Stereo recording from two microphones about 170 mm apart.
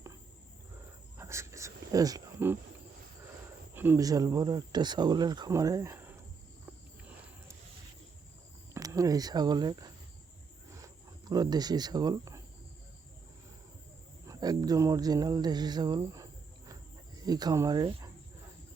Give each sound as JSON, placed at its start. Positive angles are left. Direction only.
{"t": 1.2, "sound": "a sound", "side_deg": -15}
{"t": 3.8, "sound": "speech", "side_deg": -15}
{"t": 8.7, "sound": "speech", "side_deg": -20}
{"t": 10.7, "sound": "cricket", "side_deg": -20}
{"t": 14.3, "sound": "a sound", "side_deg": -25}
{"t": 17.2, "sound": "speech", "side_deg": -25}